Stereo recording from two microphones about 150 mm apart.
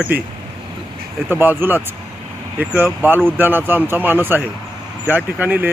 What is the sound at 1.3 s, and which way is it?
Speech, 15° right (ahead or behind).